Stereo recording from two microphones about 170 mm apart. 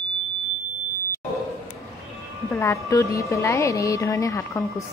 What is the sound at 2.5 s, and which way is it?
A woman's voice, 15° left (ahead or behind).